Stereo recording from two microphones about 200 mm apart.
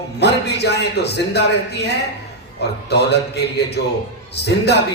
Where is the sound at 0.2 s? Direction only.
55° left (ahead or behind).